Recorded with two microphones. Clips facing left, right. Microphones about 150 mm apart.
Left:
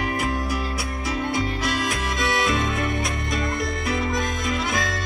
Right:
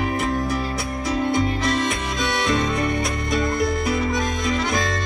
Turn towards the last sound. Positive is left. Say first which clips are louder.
# right 3 dB
turn(degrees=0)  # may be behind; listen again after turning